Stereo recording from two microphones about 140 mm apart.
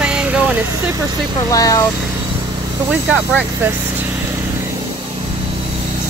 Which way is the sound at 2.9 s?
10° right (ahead or behind).